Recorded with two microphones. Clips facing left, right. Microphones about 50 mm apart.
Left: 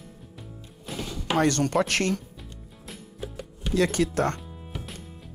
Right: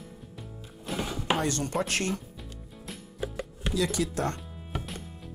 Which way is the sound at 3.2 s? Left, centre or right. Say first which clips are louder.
Right 3 dB; centre.